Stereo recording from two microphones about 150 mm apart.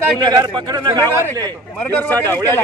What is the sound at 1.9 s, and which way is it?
Speech, 10° left (ahead or behind).